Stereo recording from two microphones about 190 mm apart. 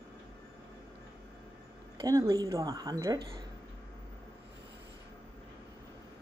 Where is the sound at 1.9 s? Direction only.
20° right (ahead or behind).